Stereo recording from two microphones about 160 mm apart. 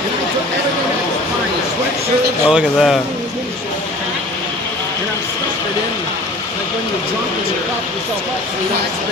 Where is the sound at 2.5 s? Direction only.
Centre (ahead or behind).